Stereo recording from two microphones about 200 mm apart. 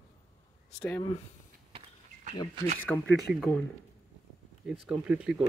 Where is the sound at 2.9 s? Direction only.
5° left (ahead or behind).